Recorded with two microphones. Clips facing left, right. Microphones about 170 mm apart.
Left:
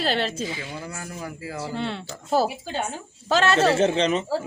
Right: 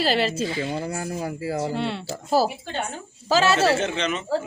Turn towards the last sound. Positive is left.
turn(degrees=35)  # may be behind; listen again after turning